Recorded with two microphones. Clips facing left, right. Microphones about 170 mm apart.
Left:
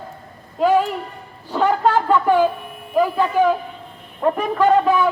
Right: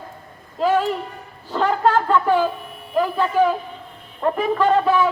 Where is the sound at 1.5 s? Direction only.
5° left (ahead or behind).